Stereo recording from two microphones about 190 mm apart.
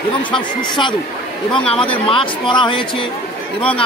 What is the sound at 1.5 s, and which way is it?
Speech, 30° left (ahead or behind).